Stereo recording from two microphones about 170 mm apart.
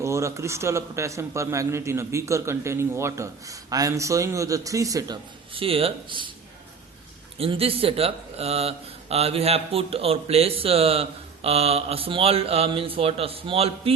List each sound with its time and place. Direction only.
0.0 s a man's voice: 15° right (ahead or behind)
5.5 s speech: 35° right (ahead or behind)
7.3 s speech: 35° right (ahead or behind)